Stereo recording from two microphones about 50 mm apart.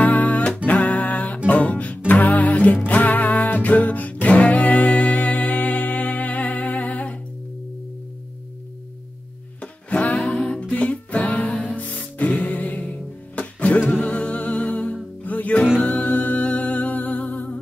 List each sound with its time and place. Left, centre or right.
0.0 s music: left
9.6 s music: left
10.6 s music: left